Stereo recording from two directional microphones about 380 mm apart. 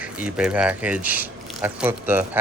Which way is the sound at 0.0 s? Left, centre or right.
Centre.